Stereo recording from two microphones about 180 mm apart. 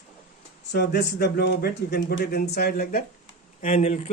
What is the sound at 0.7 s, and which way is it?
Speech, 65° left (ahead or behind).